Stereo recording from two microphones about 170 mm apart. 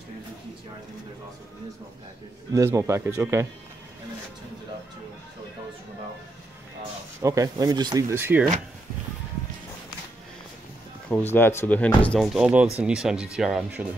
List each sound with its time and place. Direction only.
2.5 s speech: 20° right (ahead or behind)
7.2 s speech: 20° right (ahead or behind)
11.1 s speech: 10° left (ahead or behind); by 13.8 s 5° right (ahead or behind)